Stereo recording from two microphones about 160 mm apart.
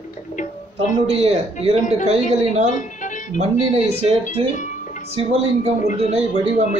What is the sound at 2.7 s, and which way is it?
Music, 50° left (ahead or behind).